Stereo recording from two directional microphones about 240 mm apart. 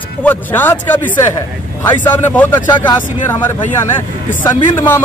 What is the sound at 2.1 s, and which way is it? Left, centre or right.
Speech, centre.